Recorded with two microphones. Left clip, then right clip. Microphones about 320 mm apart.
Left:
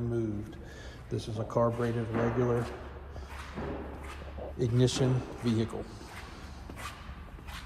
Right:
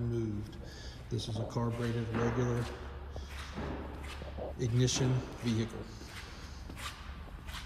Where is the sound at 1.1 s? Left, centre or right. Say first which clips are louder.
Left 4 dB; centre.